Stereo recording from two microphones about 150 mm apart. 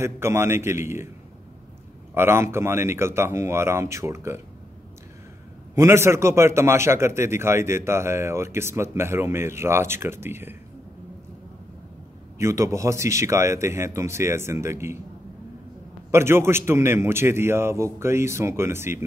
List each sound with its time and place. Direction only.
0.0 s a man's voice: 15° right (ahead or behind)
2.1 s a man's voice: 15° right (ahead or behind)
5.8 s a man's voice: 15° right (ahead or behind)
12.4 s speech: 20° right (ahead or behind)
16.1 s a man's voice: 15° right (ahead or behind)